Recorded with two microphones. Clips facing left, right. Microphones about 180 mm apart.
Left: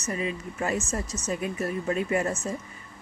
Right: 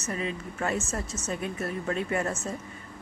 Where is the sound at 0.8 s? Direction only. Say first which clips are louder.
Left 2 dB; 25° right (ahead or behind).